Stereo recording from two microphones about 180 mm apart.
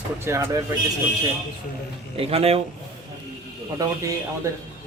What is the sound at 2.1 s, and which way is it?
Speech, 35° right (ahead or behind).